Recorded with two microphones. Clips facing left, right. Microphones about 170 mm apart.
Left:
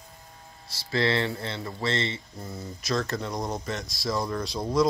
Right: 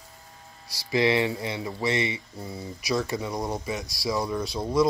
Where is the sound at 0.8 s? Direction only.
15° right (ahead or behind).